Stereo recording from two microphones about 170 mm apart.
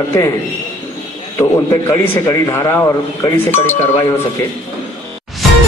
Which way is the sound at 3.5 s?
40° left (ahead or behind).